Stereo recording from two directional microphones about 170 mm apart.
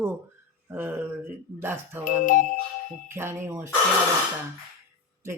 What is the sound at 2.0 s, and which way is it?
Music, 50° left (ahead or behind).